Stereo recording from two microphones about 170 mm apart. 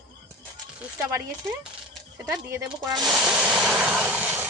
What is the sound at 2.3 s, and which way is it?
Speech, 25° right (ahead or behind).